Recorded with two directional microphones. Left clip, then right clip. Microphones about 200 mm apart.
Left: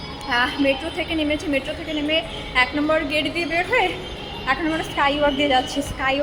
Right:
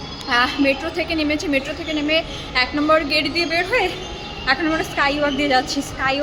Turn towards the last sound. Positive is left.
turn(degrees=-10)  # may be behind; listen again after turning